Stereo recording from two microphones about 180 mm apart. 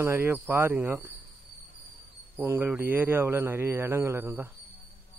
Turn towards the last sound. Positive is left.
turn(degrees=-10)  # may be behind; listen again after turning